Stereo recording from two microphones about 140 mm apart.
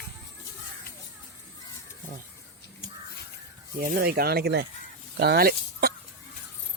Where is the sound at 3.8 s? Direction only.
90° right.